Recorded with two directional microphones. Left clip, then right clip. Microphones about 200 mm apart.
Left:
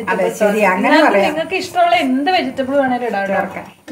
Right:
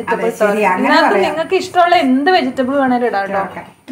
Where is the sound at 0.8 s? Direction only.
15° right (ahead or behind).